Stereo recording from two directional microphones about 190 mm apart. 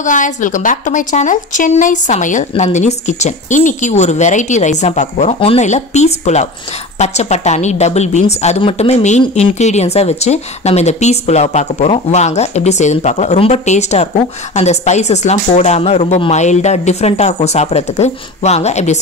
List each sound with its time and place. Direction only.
0.0 s speech: 40° left (ahead or behind)